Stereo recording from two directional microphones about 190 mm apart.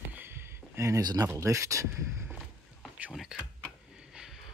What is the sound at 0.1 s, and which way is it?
Speech, 10° right (ahead or behind).